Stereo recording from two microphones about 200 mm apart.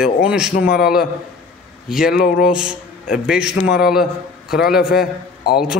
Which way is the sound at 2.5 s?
5° right (ahead or behind).